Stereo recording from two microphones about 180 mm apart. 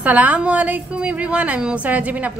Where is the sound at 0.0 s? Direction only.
10° right (ahead or behind).